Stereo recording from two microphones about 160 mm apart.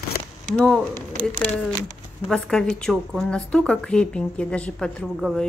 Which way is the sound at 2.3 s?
5° left (ahead or behind).